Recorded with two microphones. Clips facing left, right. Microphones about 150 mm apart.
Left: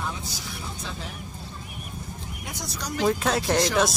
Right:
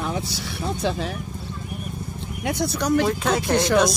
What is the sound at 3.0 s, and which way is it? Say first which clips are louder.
Speech: right 1 dB; centre (ahead or behind).